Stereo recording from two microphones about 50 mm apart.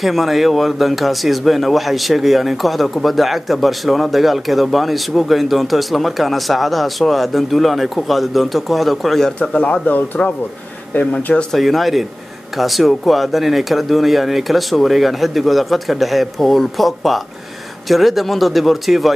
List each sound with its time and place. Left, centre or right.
0.0 s speech: centre
9.4 s speech: left
11.5 s speech: centre